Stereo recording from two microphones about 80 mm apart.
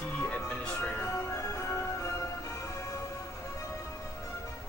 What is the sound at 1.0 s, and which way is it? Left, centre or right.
Music, left.